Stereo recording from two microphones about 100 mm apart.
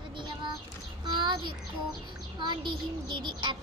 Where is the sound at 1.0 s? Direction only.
50° right (ahead or behind).